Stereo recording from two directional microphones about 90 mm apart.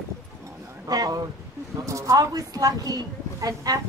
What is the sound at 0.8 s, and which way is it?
A woman's voice, 45° right (ahead or behind).